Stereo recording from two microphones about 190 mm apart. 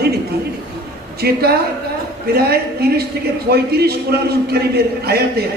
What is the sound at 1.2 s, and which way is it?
A man's voice, 55° right (ahead or behind).